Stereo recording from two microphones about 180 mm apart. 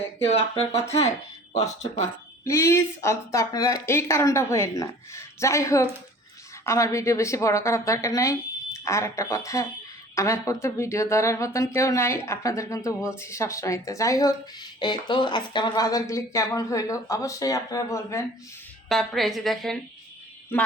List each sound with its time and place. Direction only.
0.3 s speech: 35° left (ahead or behind)
2.4 s speech: 15° left (ahead or behind)
18.9 s a woman's voice: centre (ahead or behind)